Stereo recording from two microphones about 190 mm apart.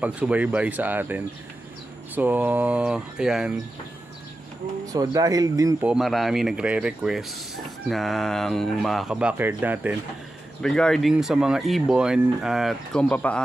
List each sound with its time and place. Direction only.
0.0 s speech: 10° right (ahead or behind)
4.9 s speech: 20° right (ahead or behind)
5.9 s speech: centre (ahead or behind)
10.6 s speech: 5° left (ahead or behind)